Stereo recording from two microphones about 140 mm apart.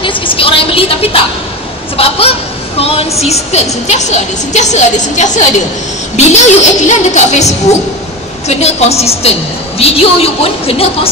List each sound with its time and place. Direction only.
0.0 s vehicle: 40° left (ahead or behind)
2.0 s honk: 45° left (ahead or behind)
2.8 s a woman's voice: 45° left (ahead or behind)